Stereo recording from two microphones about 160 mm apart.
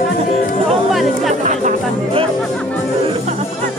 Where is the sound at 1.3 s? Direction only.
50° right (ahead or behind).